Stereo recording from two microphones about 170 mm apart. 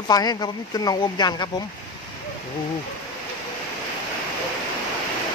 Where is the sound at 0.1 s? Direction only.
25° left (ahead or behind).